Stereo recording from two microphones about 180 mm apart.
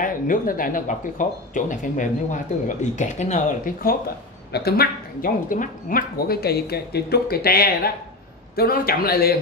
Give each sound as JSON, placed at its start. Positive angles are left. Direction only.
{"t": 0.0, "sound": "speech", "side_deg": 50}
{"t": 4.5, "sound": "speech", "side_deg": 65}